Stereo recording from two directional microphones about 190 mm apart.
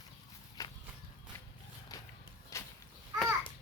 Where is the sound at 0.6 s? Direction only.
15° left (ahead or behind).